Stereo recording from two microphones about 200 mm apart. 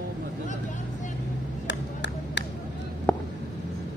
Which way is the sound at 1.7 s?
60° left (ahead or behind).